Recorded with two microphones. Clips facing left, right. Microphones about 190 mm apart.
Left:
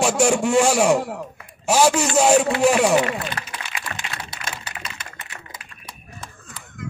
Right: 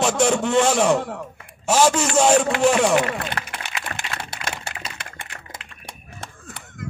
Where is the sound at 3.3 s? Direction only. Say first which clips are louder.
Right 1 dB; 60° right (ahead or behind).